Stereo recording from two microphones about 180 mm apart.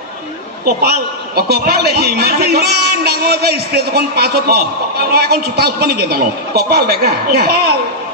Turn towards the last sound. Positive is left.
turn(degrees=-60)  # may be behind; listen again after turning